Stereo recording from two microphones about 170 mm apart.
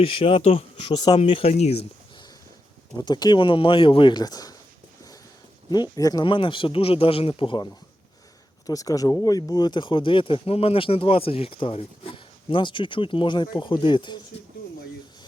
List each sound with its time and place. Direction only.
0.0 s speech: 30° left (ahead or behind)
1.2 s speech: 35° left (ahead or behind)
3.0 s speech: 25° left (ahead or behind)
5.7 s speech: 25° left (ahead or behind)